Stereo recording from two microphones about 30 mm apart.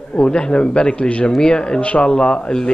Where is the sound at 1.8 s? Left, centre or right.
Left.